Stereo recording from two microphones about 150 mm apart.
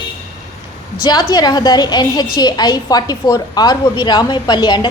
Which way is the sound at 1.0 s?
25° left (ahead or behind).